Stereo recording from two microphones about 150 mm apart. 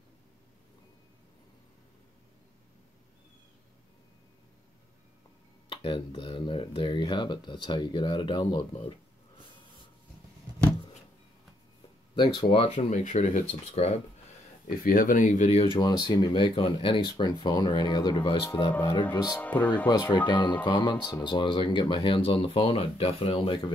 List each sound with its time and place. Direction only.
5.8 s speech: 40° left (ahead or behind)
12.2 s speech: 30° left (ahead or behind)
12.7 s speech: 50° left (ahead or behind)
14.8 s speech: 70° left (ahead or behind); by 19.0 s 30° left (ahead or behind)
19.3 s speech: 10° left (ahead or behind)
19.9 s speech: 25° left (ahead or behind)